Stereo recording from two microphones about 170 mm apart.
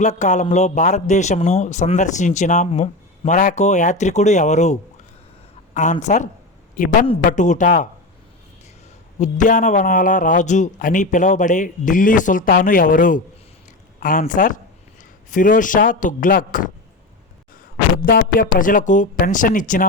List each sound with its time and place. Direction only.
0.0 s a man's voice: 45° left (ahead or behind)
9.1 s a man's voice: 45° left (ahead or behind)
17.9 s a man's voice: 60° left (ahead or behind)